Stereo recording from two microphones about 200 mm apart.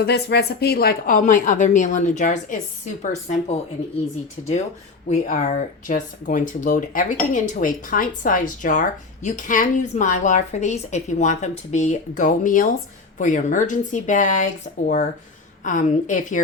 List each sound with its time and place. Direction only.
0.0 s speech: 55° left (ahead or behind); by 4.5 s 30° left (ahead or behind)
5.0 s speech: 40° left (ahead or behind)
15.6 s speech: 40° left (ahead or behind)